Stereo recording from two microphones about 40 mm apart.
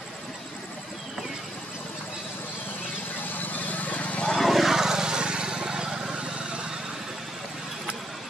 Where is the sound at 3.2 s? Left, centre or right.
Left.